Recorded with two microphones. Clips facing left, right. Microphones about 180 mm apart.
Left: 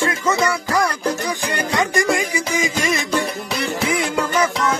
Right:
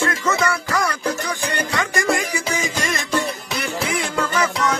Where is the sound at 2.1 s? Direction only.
10° left (ahead or behind).